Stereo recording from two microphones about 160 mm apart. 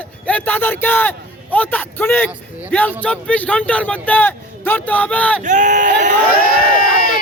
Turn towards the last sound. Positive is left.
turn(degrees=65)  # may be behind; listen again after turning